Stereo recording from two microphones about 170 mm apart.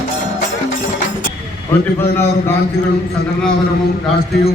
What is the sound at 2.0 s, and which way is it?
Speech, 15° left (ahead or behind).